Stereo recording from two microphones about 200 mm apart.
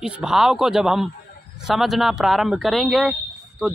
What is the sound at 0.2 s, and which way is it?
Speech, 5° right (ahead or behind).